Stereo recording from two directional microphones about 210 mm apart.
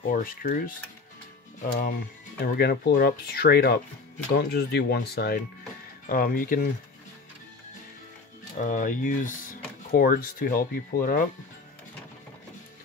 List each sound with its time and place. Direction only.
0.1 s speech: 45° left (ahead or behind)
8.5 s speech: 40° left (ahead or behind)